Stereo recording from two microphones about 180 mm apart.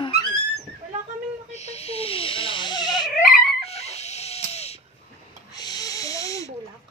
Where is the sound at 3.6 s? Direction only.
35° left (ahead or behind).